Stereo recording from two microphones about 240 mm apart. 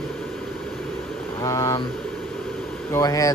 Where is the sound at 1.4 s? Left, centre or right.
Centre.